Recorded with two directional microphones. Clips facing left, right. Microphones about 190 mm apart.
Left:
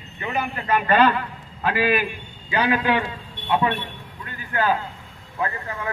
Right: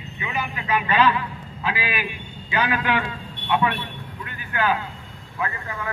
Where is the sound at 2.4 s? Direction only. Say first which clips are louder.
Left 3 dB; 35° left (ahead or behind).